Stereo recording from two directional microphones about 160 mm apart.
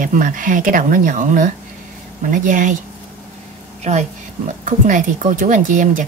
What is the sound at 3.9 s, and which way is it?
Speech, 45° right (ahead or behind).